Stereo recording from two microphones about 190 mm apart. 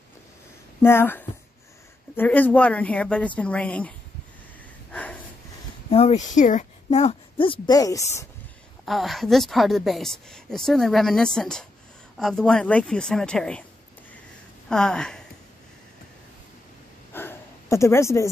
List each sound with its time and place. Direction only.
0.8 s a woman's voice: 10° left (ahead or behind)
5.9 s a woman's voice: 30° left (ahead or behind); by 8.3 s 15° left (ahead or behind)
8.8 s a woman's voice: centre (ahead or behind)
14.7 s speech: 5° left (ahead or behind)
17.1 s sniff: 10° left (ahead or behind)